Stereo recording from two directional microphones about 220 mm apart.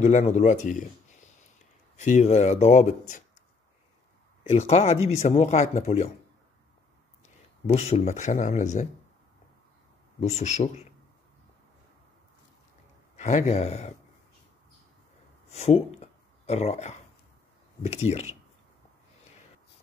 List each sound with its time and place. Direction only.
0.0 s speech: 30° left (ahead or behind)
2.0 s speech: 30° left (ahead or behind)
4.5 s speech: 30° left (ahead or behind)
7.6 s speech: 30° left (ahead or behind)
10.2 s speech: 30° left (ahead or behind)
13.1 s speech: 30° left (ahead or behind)
15.5 s speech: 30° left (ahead or behind)